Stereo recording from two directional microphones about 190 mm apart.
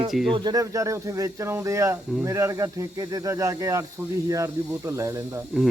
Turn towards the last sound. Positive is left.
turn(degrees=-15)  # may be behind; listen again after turning